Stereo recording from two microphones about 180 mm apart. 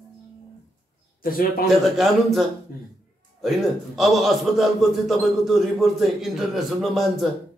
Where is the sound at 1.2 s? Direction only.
55° left (ahead or behind).